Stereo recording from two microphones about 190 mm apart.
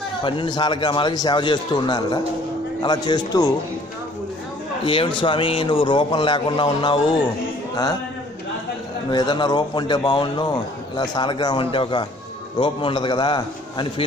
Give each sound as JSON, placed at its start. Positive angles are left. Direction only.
{"t": 0.2, "sound": "a man's voice", "side_deg": 25}
{"t": 4.8, "sound": "a man's voice", "side_deg": 25}
{"t": 9.1, "sound": "a man's voice", "side_deg": 20}